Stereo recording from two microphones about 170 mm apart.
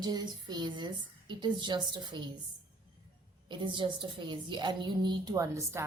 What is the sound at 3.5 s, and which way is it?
A woman's voice, 30° right (ahead or behind).